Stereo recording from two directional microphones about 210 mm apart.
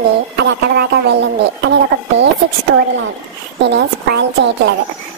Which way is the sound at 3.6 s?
55° right (ahead or behind).